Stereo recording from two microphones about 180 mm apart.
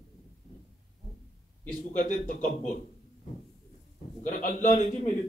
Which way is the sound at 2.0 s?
45° left (ahead or behind).